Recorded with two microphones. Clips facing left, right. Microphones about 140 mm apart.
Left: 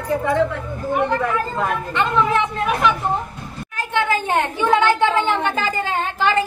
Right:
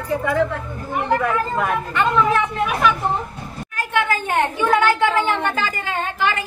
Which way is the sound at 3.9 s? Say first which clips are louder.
Left 1 dB; 25° left (ahead or behind).